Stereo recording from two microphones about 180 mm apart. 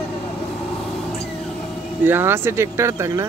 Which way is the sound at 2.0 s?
10° right (ahead or behind).